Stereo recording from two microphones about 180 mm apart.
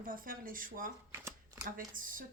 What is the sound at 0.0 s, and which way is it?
Speech, 50° right (ahead or behind).